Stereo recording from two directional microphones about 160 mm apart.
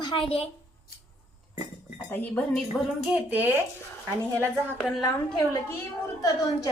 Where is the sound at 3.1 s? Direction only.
10° right (ahead or behind).